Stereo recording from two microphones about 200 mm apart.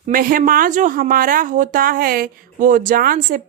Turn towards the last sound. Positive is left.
turn(degrees=-45)  # may be behind; listen again after turning